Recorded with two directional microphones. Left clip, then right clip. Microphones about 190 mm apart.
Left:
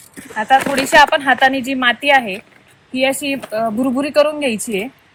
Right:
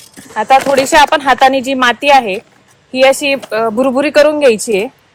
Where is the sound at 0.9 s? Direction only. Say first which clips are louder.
Right 1 dB; 45° right (ahead or behind).